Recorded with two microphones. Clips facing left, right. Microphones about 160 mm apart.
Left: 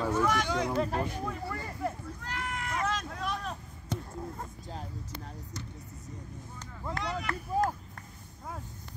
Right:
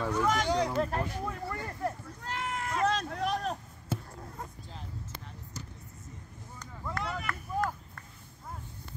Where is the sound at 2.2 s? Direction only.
30° right (ahead or behind).